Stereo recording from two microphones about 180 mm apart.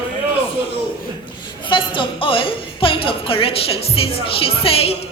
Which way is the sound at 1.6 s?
30° left (ahead or behind).